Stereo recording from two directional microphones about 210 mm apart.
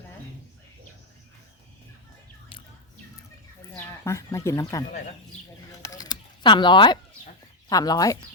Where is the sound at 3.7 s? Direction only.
15° left (ahead or behind).